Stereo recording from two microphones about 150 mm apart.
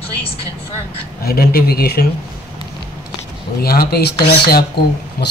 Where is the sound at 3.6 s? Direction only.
90° left.